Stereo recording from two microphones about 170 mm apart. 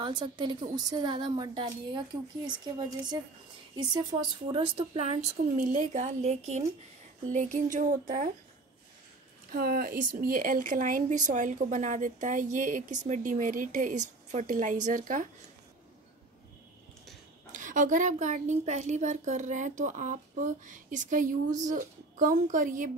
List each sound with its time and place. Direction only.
0.0 s a woman's voice: 25° right (ahead or behind)
4.5 s a woman's voice: 30° right (ahead or behind); by 8.3 s 50° right (ahead or behind)
9.5 s a woman's voice: 60° right (ahead or behind)
17.5 s a woman's voice: 50° right (ahead or behind)